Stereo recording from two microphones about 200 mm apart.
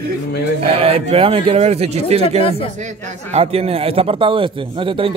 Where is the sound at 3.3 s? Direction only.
30° right (ahead or behind).